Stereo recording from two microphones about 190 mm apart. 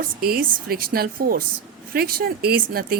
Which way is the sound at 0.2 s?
55° right (ahead or behind).